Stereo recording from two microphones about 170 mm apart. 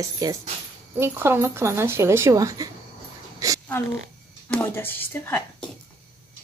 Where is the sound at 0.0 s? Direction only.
20° right (ahead or behind).